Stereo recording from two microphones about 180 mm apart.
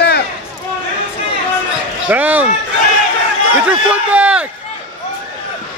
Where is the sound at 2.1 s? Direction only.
10° right (ahead or behind).